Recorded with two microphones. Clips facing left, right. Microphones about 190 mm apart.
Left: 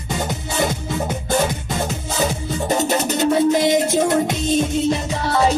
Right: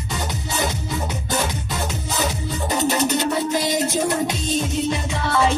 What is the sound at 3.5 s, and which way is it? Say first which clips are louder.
Music: left 5 dB; 25° left (ahead or behind).